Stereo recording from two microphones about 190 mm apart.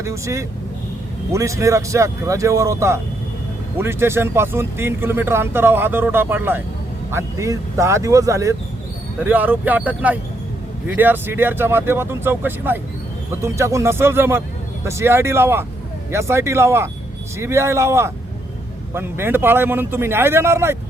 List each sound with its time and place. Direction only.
0.0 s speech: 15° right (ahead or behind)